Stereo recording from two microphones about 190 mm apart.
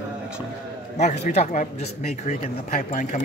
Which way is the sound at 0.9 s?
35° left (ahead or behind).